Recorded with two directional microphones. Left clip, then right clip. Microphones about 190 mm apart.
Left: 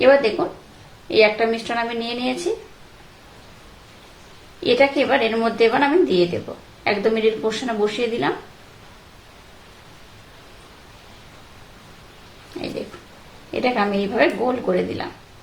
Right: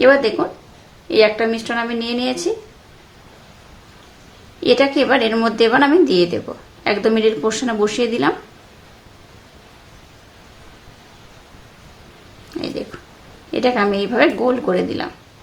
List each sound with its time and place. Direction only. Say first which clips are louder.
0.0 s a woman's voice: right 2 dB; 20° right (ahead or behind)
4.6 s a woman's voice: right 2 dB; 25° right (ahead or behind)
13.5 s a woman's voice: right 4 dB; 25° right (ahead or behind)